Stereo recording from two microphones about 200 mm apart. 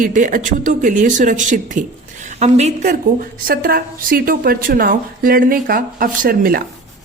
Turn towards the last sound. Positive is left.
turn(degrees=-45)  # may be behind; listen again after turning